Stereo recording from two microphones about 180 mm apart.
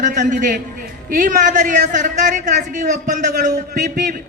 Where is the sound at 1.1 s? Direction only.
50° right (ahead or behind).